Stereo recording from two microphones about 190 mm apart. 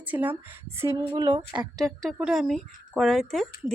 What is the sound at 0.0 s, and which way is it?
A woman's voice, 10° right (ahead or behind).